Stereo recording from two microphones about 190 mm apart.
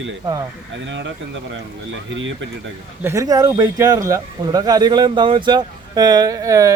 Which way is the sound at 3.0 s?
15° right (ahead or behind).